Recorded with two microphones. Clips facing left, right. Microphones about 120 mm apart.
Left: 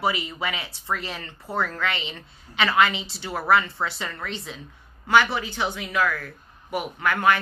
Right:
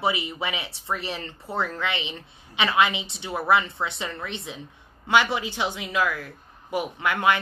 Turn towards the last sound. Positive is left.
turn(degrees=-20)  # may be behind; listen again after turning